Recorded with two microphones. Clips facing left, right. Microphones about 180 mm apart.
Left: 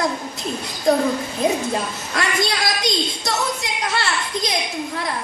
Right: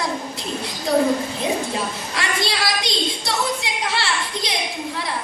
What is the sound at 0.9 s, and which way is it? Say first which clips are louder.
Speech: left 2 dB; 45° left (ahead or behind).